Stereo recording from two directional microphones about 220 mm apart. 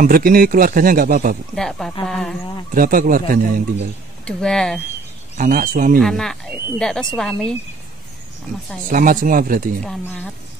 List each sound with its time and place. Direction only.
0.0 s speech: 40° right (ahead or behind)
1.5 s speech: centre (ahead or behind)
2.7 s speech: 40° right (ahead or behind)
4.2 s speech: 5° left (ahead or behind)
5.4 s speech: 40° right (ahead or behind)
5.9 s speech: centre (ahead or behind)
8.9 s speech: 40° right (ahead or behind)
9.8 s speech: 5° left (ahead or behind)